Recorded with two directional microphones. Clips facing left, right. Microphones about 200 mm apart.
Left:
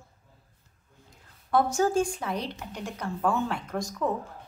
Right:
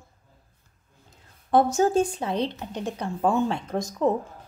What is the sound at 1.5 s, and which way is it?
Speech, 20° right (ahead or behind).